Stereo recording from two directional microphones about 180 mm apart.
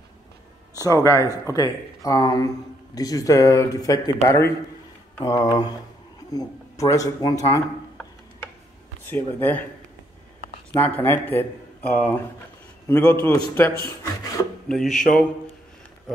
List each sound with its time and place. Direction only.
0.7 s speech: 20° left (ahead or behind)
9.0 s a man's voice: 10° left (ahead or behind)
10.7 s a man's voice: 10° left (ahead or behind)